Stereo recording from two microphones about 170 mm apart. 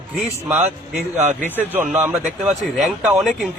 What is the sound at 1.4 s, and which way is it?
Speech, 10° left (ahead or behind).